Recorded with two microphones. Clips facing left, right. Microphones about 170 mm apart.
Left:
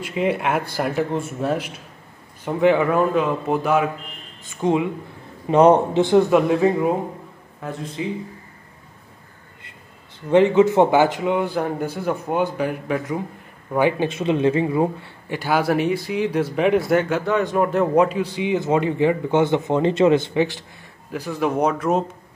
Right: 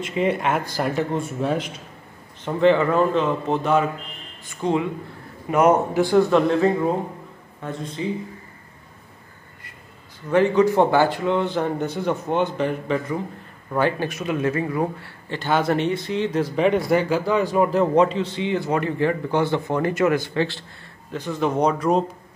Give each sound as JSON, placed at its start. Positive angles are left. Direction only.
{"t": 0.0, "sound": "a man's voice", "side_deg": 5}
{"t": 5.5, "sound": "a man's voice", "side_deg": 30}
{"t": 6.3, "sound": "a man's voice", "side_deg": 10}
{"t": 10.3, "sound": "a man's voice", "side_deg": 20}
{"t": 17.7, "sound": "a man's voice", "side_deg": 10}